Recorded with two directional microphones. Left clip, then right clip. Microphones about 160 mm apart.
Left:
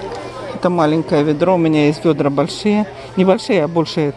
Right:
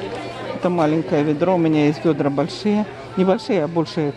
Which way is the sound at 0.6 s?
5° left (ahead or behind).